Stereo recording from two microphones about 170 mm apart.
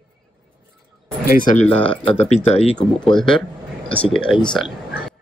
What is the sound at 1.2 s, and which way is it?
Speech, 55° left (ahead or behind).